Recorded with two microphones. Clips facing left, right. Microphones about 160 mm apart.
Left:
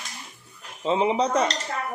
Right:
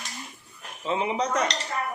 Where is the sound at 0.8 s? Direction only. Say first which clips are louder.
Left 4 dB; 30° left (ahead or behind).